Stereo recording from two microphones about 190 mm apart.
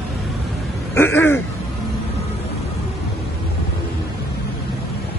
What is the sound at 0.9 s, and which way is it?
Throat clearing, 10° left (ahead or behind).